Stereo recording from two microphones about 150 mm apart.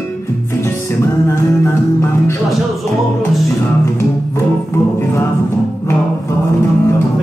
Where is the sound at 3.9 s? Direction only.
20° left (ahead or behind).